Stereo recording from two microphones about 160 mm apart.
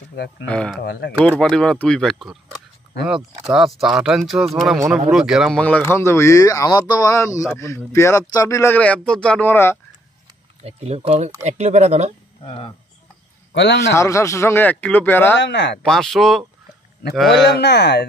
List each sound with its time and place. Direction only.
0.5 s speech: 5° left (ahead or behind)
0.7 s speech: 90° left
1.4 s speech: 5° left (ahead or behind)
3.5 s speech: centre (ahead or behind)
5.9 s speech: 15° left (ahead or behind)
10.6 s speech: 40° right (ahead or behind)
12.4 s speech: 35° left (ahead or behind)
13.5 s a sound: 90° left
13.8 s speech: 20° left (ahead or behind)
15.4 s speech: 90° left
15.8 s speech: centre (ahead or behind)
17.3 s speech: 90° left